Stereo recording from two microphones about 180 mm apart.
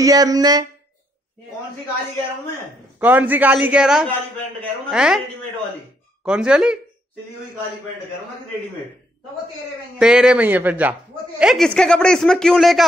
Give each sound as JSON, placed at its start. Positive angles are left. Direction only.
{"t": 0.0, "sound": "speech", "side_deg": -20}
{"t": 3.0, "sound": "a man's voice", "side_deg": -10}
{"t": 6.2, "sound": "speech", "side_deg": -5}
{"t": 9.9, "sound": "speech", "side_deg": -5}